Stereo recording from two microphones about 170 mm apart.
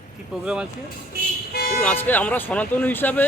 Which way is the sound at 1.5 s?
65° left (ahead or behind).